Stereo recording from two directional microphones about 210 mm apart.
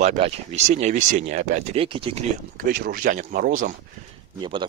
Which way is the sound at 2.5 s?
45° right (ahead or behind).